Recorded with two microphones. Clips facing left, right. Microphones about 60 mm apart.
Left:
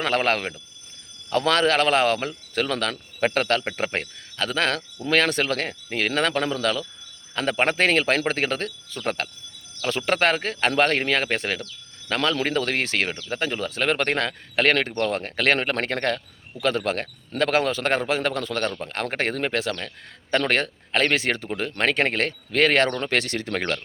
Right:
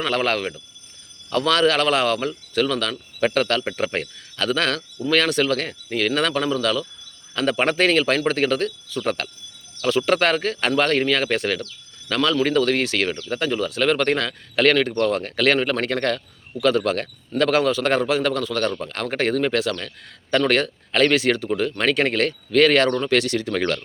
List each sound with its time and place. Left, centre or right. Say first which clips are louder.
0.0 s a man's voice: right 1 dB; left